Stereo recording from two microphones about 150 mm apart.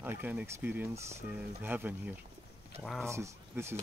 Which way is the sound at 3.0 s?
20° right (ahead or behind).